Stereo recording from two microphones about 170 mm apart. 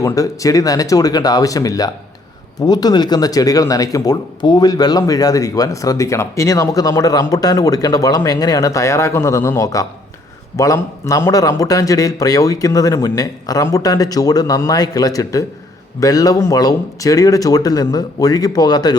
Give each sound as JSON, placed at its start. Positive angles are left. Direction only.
{"t": 0.0, "sound": "speech", "side_deg": 20}